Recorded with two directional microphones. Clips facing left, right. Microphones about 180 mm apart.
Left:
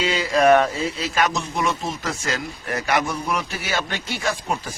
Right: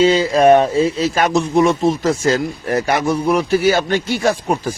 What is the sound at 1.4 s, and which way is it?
Speech, 40° right (ahead or behind).